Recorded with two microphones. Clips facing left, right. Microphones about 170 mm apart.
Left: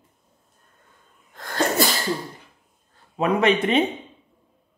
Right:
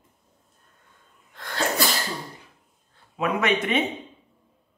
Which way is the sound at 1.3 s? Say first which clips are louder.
Left 2 dB; 45° left (ahead or behind).